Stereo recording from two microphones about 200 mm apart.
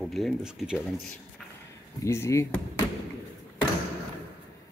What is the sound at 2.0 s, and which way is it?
Speech, 15° left (ahead or behind).